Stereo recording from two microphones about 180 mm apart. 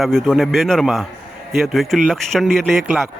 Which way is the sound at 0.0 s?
Centre (ahead or behind).